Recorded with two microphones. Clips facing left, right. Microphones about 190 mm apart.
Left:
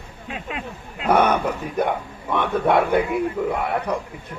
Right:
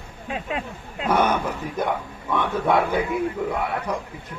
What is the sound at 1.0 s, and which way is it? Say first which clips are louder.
Speech: left 3 dB; 60° left (ahead or behind).